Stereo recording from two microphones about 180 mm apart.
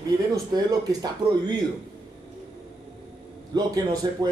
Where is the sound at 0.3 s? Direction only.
15° right (ahead or behind).